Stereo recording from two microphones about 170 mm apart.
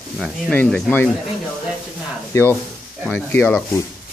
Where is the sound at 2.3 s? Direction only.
15° left (ahead or behind).